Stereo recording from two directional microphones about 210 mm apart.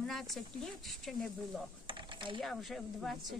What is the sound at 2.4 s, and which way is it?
Speech, centre (ahead or behind).